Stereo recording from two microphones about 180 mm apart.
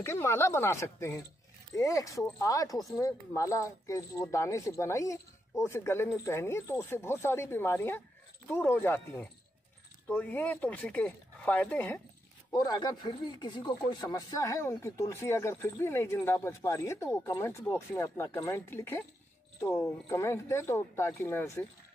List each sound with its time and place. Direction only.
0.0 s speech: 15° left (ahead or behind)
12.5 s speech: 20° left (ahead or behind)